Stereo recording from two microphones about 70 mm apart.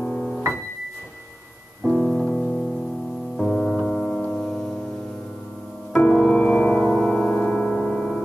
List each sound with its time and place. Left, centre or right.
0.0 s music: centre
1.9 s piano: centre
3.3 s music: centre
6.0 s music: centre
6.9 s gong: centre